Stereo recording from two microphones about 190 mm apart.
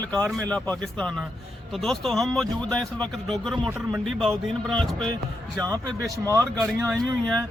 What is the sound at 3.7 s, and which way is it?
Speech, 10° right (ahead or behind).